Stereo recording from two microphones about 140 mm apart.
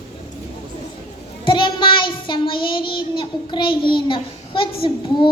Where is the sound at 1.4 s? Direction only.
35° left (ahead or behind).